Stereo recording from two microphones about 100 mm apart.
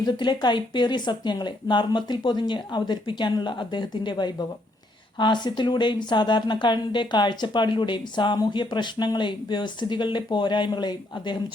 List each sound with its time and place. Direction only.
0.0 s speech: 50° left (ahead or behind)